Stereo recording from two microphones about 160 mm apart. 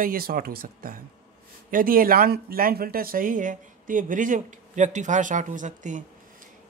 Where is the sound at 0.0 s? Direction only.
65° right (ahead or behind).